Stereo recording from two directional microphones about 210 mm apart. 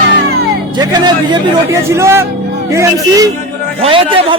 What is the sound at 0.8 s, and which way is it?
A man's voice, 20° right (ahead or behind).